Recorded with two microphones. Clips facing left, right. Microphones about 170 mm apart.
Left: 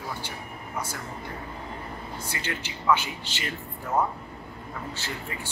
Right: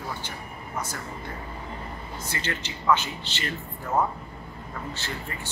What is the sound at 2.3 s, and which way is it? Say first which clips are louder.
Speech: right 3 dB; 10° left (ahead or behind).